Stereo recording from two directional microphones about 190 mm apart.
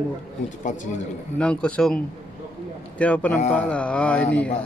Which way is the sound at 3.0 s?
5° left (ahead or behind).